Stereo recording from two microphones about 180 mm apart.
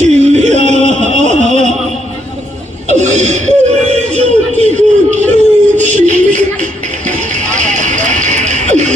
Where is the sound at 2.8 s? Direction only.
40° right (ahead or behind).